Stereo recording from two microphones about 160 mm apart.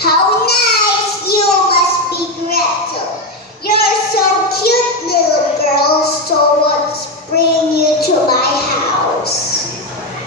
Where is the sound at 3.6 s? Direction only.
75° left (ahead or behind).